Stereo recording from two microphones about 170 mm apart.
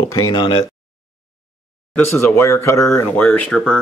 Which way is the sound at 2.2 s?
15° left (ahead or behind).